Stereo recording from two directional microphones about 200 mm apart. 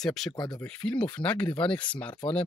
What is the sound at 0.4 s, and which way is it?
Speech, 20° left (ahead or behind).